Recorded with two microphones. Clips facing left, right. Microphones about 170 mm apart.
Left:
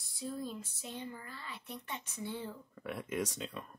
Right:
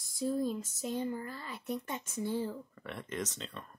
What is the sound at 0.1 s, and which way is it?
Speech, 40° right (ahead or behind).